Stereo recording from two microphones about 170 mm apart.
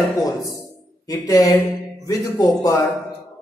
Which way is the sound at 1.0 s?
20° left (ahead or behind).